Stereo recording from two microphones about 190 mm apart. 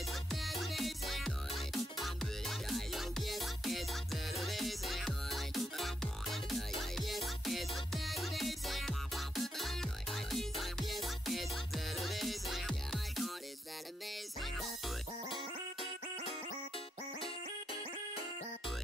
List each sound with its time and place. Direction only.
0.0 s music: centre (ahead or behind)
14.4 s music: centre (ahead or behind)
15.2 s music: 25° left (ahead or behind)